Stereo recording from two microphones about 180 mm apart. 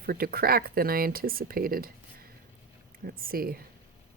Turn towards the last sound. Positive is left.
turn(degrees=-55)  # may be behind; listen again after turning